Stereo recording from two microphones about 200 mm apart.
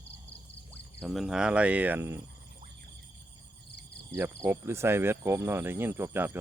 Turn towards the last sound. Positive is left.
turn(degrees=-10)  # may be behind; listen again after turning